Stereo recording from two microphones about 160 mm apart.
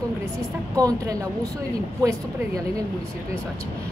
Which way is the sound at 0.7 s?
20° right (ahead or behind).